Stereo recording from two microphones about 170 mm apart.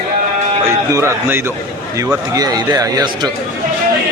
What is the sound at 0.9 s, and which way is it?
A man's voice, 15° right (ahead or behind).